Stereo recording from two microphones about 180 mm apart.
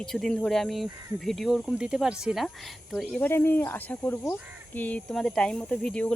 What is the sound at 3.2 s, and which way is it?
Speech, 10° left (ahead or behind).